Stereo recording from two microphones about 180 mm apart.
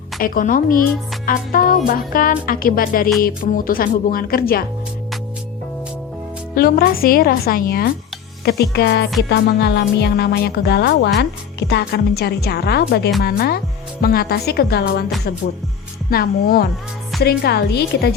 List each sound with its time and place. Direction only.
0.2 s speech: 50° left (ahead or behind)
6.5 s speech: 55° left (ahead or behind)
16.0 s speech: 55° left (ahead or behind)